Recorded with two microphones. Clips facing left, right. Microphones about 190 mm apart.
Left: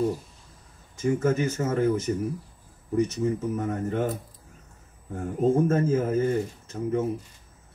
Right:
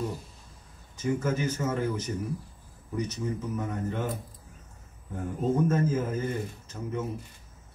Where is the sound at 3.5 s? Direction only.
50° left (ahead or behind).